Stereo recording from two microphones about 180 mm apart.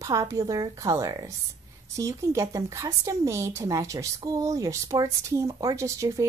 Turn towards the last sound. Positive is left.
turn(degrees=-20)  # may be behind; listen again after turning